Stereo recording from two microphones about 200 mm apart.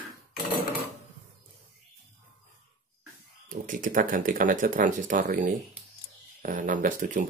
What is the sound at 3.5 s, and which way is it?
Speech, 40° right (ahead or behind).